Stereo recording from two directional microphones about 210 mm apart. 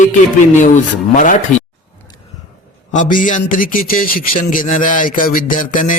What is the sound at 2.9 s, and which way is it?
Speech, 40° left (ahead or behind).